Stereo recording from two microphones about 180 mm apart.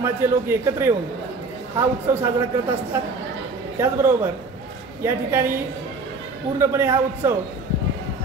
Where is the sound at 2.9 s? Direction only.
15° right (ahead or behind).